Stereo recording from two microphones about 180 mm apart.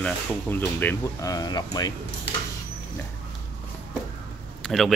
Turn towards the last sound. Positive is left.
turn(degrees=0)  # may be behind; listen again after turning